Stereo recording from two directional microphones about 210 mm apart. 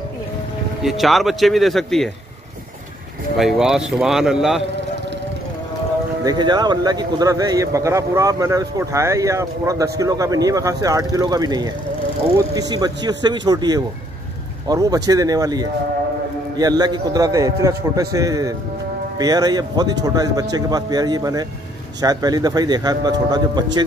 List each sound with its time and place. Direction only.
0.8 s a man's voice: centre (ahead or behind)
3.3 s a man's voice: centre (ahead or behind)
6.2 s a man's voice: 20° right (ahead or behind)